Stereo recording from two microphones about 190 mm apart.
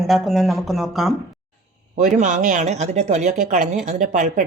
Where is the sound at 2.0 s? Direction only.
40° right (ahead or behind).